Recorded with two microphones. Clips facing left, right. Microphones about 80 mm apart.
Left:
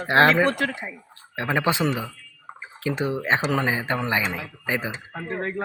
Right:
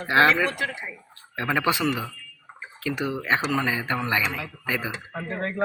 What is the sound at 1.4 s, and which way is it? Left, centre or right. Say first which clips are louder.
Speech: left 1 dB; left.